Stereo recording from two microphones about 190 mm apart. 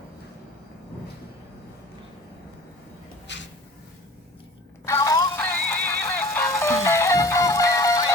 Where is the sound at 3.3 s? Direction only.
70° left (ahead or behind).